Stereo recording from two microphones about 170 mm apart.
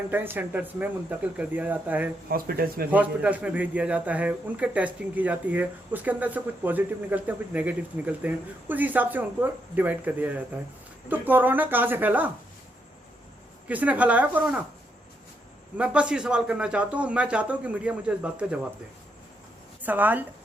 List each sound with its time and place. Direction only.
0.1 s a man's voice: 10° right (ahead or behind)
2.3 s speech: 60° right (ahead or behind)
2.9 s a man's voice: 10° right (ahead or behind)
13.7 s a man's voice: 10° right (ahead or behind)
15.8 s a man's voice: 5° right (ahead or behind)
19.8 s a woman's voice: 10° right (ahead or behind)